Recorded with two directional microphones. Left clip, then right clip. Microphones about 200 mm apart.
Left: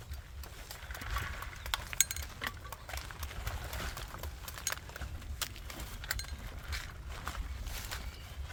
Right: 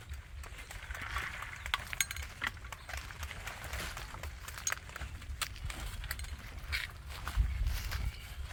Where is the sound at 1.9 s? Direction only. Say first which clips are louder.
Left 4 dB; centre (ahead or behind).